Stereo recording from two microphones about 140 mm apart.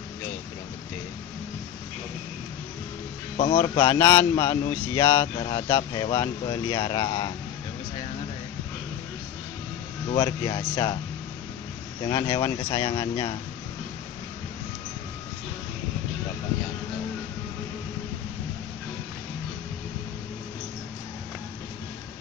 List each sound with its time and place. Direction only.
3.5 s a man's voice: 30° left (ahead or behind)
10.1 s a man's voice: 30° left (ahead or behind)
12.0 s speech: 30° left (ahead or behind)